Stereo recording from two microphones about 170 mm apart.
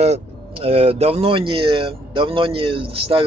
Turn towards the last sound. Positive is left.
turn(degrees=-35)  # may be behind; listen again after turning